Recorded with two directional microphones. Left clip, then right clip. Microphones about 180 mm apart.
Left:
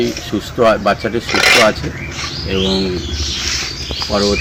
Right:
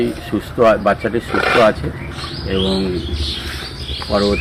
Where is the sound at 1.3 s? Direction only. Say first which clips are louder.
Left 5 dB; 55° right (ahead or behind).